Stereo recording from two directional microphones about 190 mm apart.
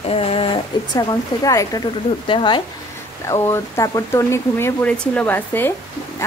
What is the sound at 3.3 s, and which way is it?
Speech, 15° left (ahead or behind).